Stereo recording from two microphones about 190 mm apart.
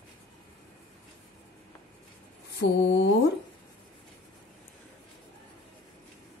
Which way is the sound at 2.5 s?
75° left (ahead or behind).